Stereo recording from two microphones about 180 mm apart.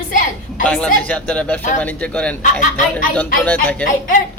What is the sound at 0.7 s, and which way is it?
A man's voice, 5° left (ahead or behind).